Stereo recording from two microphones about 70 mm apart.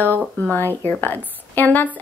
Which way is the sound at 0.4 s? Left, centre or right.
Left.